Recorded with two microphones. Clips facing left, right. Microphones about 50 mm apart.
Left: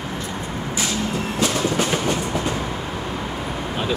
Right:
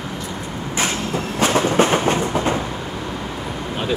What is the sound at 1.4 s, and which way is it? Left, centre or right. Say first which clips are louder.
Train: right 6 dB; right.